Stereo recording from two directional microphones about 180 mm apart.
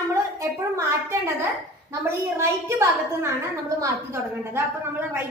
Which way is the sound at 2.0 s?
15° right (ahead or behind).